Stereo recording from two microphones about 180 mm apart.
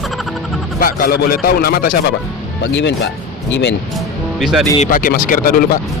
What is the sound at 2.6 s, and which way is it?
Speech, 80° left.